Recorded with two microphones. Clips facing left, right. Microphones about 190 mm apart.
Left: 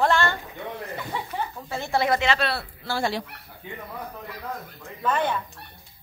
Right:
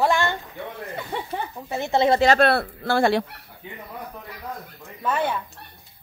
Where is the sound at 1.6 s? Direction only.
20° right (ahead or behind).